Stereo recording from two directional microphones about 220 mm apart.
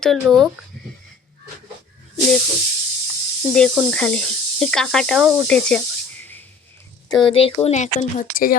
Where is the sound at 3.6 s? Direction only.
5° left (ahead or behind).